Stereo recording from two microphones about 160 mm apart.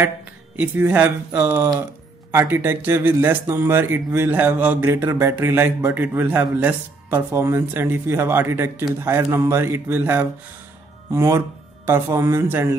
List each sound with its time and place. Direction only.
0.6 s speech: 10° right (ahead or behind)